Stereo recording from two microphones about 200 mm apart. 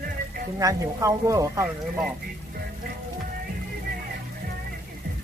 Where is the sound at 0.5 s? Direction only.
15° right (ahead or behind).